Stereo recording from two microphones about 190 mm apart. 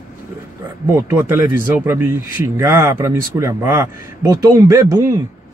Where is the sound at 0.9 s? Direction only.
10° right (ahead or behind).